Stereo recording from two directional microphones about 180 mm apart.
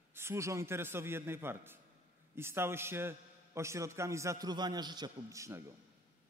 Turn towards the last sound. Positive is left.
turn(degrees=-15)  # may be behind; listen again after turning